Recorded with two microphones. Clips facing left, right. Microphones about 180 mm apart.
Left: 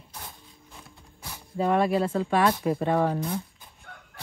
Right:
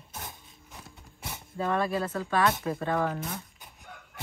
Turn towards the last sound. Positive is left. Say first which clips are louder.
# left 5 dB
turn(degrees=25)  # may be behind; listen again after turning